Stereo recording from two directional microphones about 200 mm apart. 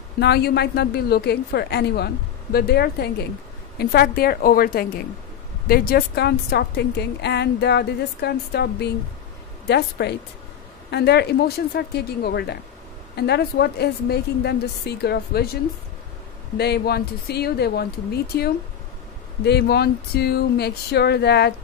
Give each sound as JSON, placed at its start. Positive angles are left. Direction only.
{"t": 0.2, "sound": "a woman's voice", "side_deg": 55}